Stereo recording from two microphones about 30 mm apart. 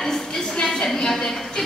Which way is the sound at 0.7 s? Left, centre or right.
Centre.